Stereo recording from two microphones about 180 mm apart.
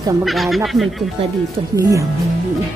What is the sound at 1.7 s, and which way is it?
Speech, 20° right (ahead or behind).